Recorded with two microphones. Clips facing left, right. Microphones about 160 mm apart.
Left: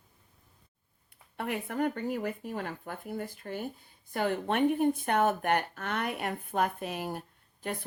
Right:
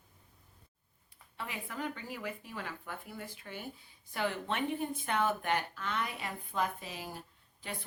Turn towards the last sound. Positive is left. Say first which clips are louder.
# left 8 dB
turn(degrees=55)  # may be behind; listen again after turning